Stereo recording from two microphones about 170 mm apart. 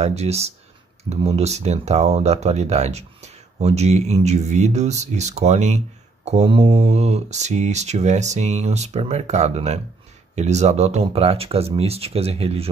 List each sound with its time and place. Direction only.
0.0 s speech: 40° right (ahead or behind)